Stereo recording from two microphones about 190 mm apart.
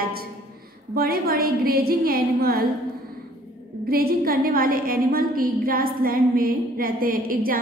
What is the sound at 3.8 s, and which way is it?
A woman's voice, 55° right (ahead or behind).